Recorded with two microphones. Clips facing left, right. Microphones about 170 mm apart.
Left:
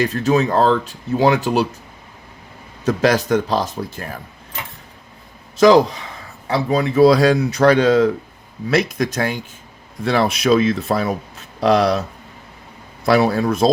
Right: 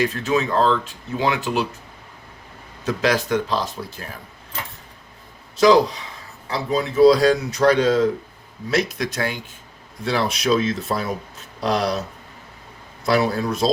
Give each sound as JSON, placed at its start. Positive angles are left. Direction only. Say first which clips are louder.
{"t": 0.0, "sound": "speech", "louder": "left 4 dB", "side_deg": 40}
{"t": 2.8, "sound": "speech", "louder": "left 4 dB", "side_deg": 45}
{"t": 5.5, "sound": "speech", "louder": "left 3 dB", "side_deg": 50}
{"t": 6.5, "sound": "speech", "louder": "left 5 dB", "side_deg": 60}
{"t": 8.7, "sound": "speech", "louder": "left 4 dB", "side_deg": 45}
{"t": 10.0, "sound": "speech", "louder": "left 5 dB", "side_deg": 55}
{"t": 13.1, "sound": "speech", "louder": "left 4 dB", "side_deg": 65}